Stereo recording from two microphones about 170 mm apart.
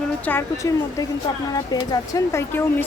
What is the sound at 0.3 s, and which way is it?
Speech, 15° left (ahead or behind).